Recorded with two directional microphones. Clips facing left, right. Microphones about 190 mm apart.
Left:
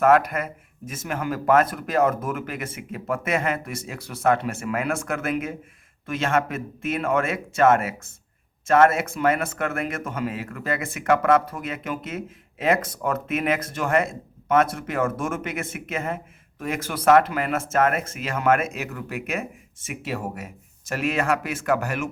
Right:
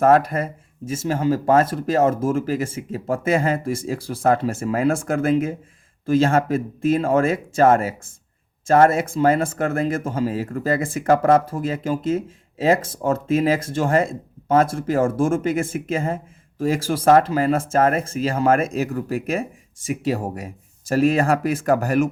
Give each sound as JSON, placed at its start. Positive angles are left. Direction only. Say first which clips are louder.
{"t": 0.0, "sound": "speech", "louder": "right 2 dB", "side_deg": -30}